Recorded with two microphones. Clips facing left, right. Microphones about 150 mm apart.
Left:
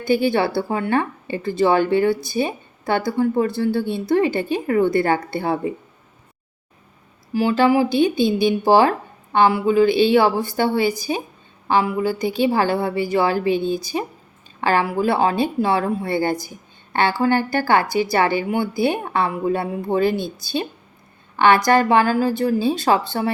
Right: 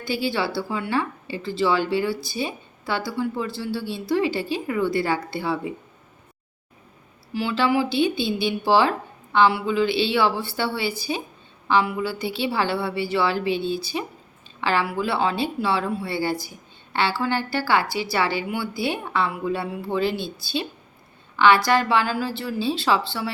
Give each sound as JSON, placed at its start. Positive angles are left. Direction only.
{"t": 0.0, "sound": "a woman's voice", "side_deg": 50}
{"t": 7.3, "sound": "a woman's voice", "side_deg": 45}
{"t": 13.9, "sound": "speech", "side_deg": 35}
{"t": 14.6, "sound": "a woman's voice", "side_deg": 45}
{"t": 21.3, "sound": "a woman's voice", "side_deg": 50}